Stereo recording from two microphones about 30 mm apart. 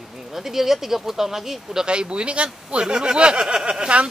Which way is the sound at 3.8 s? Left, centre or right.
Right.